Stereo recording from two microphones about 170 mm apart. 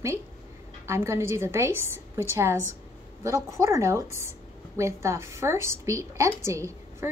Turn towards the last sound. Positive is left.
turn(degrees=-15)  # may be behind; listen again after turning